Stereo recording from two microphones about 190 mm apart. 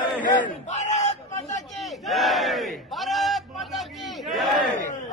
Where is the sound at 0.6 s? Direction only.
40° left (ahead or behind).